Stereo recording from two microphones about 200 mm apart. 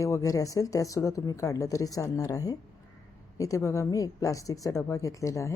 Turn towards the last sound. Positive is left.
turn(degrees=15)  # may be behind; listen again after turning